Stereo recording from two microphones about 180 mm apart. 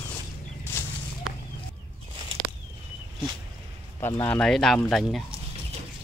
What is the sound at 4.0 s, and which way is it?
Speech, 10° left (ahead or behind).